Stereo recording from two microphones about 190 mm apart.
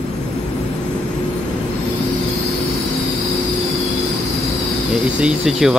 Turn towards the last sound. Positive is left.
turn(degrees=-5)  # may be behind; listen again after turning